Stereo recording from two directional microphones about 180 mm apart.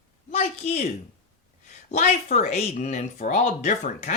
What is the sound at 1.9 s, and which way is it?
Speech, 40° left (ahead or behind).